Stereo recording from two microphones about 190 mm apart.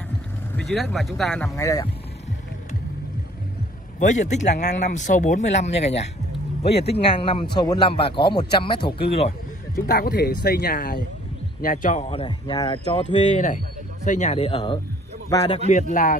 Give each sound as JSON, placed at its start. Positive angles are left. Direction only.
{"t": 0.6, "sound": "speech", "side_deg": 5}
{"t": 1.4, "sound": "speech", "side_deg": 15}
{"t": 4.0, "sound": "speech", "side_deg": 40}
{"t": 9.8, "sound": "speech", "side_deg": 50}
{"t": 12.9, "sound": "speech", "side_deg": 35}